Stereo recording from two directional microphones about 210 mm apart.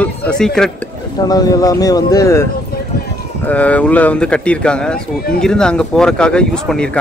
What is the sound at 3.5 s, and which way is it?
Speech, 5° left (ahead or behind).